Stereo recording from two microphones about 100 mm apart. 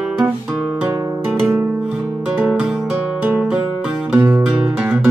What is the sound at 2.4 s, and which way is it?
Music, 5° right (ahead or behind).